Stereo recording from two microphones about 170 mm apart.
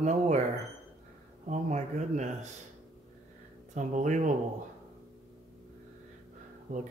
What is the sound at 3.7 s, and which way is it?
Speech, 45° right (ahead or behind).